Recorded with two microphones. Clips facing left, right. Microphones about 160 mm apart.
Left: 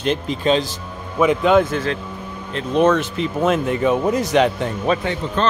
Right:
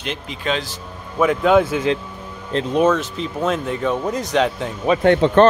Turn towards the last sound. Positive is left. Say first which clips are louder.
# right 9 dB
turn(degrees=-65)  # may be behind; listen again after turning